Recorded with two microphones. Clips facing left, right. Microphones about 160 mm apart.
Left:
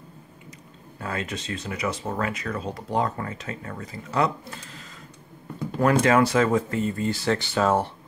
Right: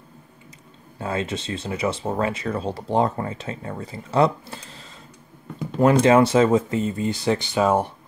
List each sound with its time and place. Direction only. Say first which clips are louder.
0.9 s speech: right 5 dB; 25° right (ahead or behind)